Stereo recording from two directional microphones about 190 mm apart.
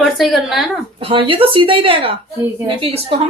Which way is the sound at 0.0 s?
Centre (ahead or behind).